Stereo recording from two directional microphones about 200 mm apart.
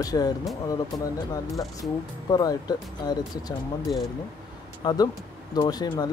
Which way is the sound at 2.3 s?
20° left (ahead or behind).